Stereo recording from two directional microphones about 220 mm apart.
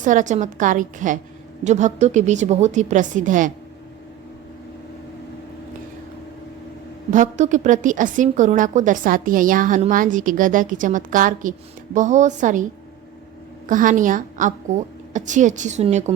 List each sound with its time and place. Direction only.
0.0 s a woman's voice: 35° right (ahead or behind)
7.1 s a woman's voice: 35° right (ahead or behind)
13.7 s a woman's voice: 35° right (ahead or behind)